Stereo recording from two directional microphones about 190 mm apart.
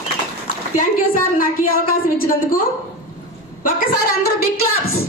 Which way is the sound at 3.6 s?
50° left (ahead or behind).